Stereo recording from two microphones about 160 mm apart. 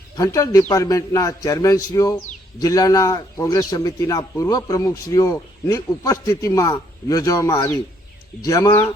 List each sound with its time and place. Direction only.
0.2 s a man's voice: 20° left (ahead or behind)